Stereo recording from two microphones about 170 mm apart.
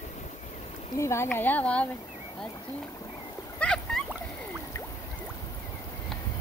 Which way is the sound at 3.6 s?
5° left (ahead or behind).